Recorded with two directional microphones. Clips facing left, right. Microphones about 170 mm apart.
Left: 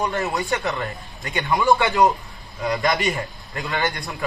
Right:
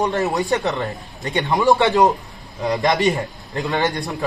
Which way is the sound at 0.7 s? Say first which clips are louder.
Right 3 dB; 20° right (ahead or behind).